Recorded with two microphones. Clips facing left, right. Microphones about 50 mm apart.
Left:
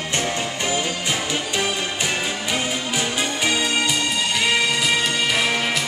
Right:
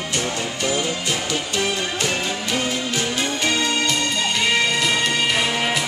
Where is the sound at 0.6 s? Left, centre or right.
Centre.